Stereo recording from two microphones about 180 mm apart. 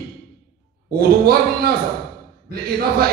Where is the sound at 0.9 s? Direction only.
55° right (ahead or behind).